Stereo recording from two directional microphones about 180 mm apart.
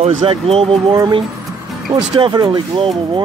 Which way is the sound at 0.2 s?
30° right (ahead or behind).